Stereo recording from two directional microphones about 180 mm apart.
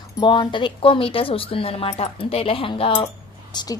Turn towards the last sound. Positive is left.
turn(degrees=25)  # may be behind; listen again after turning